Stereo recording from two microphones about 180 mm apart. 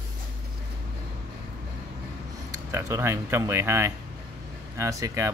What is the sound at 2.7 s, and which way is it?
Speech, 15° right (ahead or behind).